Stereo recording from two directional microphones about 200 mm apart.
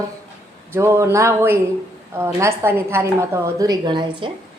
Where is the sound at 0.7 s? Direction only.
15° right (ahead or behind).